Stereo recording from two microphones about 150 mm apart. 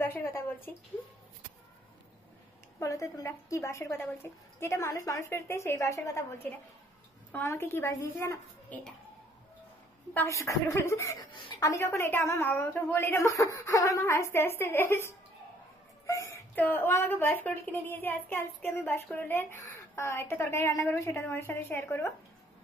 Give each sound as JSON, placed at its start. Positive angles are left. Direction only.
{"t": 0.0, "sound": "a sound", "side_deg": 15}
{"t": 2.8, "sound": "a woman's voice", "side_deg": 20}
{"t": 10.1, "sound": "a woman's voice", "side_deg": 20}